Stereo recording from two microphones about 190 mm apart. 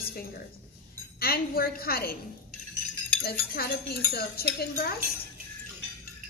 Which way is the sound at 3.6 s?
55° left (ahead or behind).